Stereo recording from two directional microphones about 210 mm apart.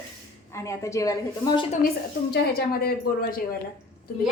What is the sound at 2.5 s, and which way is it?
Speech, 45° left (ahead or behind).